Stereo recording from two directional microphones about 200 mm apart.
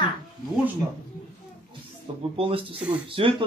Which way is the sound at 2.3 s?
25° right (ahead or behind).